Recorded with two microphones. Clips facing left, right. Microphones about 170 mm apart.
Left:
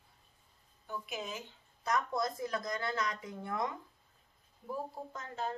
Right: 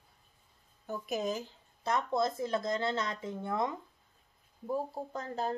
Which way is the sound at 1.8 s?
25° right (ahead or behind).